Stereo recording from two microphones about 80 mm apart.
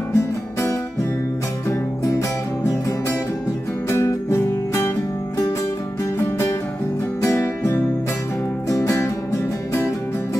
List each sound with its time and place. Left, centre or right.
0.1 s music: left
3.9 s music: left
7.3 s music: left